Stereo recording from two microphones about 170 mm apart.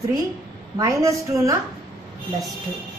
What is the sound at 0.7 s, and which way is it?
Speech, 20° right (ahead or behind).